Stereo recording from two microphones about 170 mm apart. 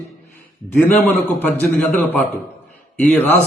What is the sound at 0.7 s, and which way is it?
A man's voice, 10° left (ahead or behind).